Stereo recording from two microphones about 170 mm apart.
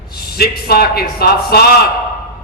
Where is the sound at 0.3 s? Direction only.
65° left (ahead or behind).